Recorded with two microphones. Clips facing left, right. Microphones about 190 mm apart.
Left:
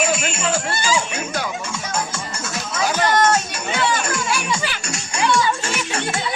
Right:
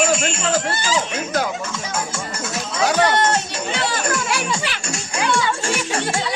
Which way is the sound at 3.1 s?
35° right (ahead or behind).